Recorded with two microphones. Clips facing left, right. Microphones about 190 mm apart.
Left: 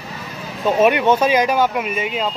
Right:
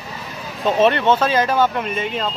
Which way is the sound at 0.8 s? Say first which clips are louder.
Left 1 dB; 10° left (ahead or behind).